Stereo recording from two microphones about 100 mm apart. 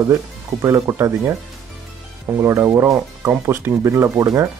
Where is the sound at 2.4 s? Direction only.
25° right (ahead or behind).